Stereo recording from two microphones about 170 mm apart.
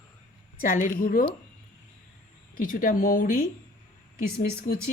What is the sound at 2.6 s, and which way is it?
Speech, 55° left (ahead or behind).